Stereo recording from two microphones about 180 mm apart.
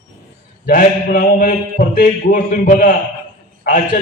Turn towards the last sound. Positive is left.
turn(degrees=50)  # may be behind; listen again after turning